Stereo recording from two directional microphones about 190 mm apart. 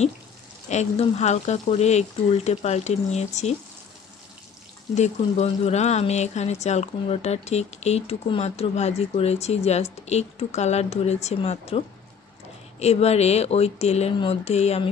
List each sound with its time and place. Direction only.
0.7 s speech: 35° left (ahead or behind)
4.9 s speech: 35° left (ahead or behind)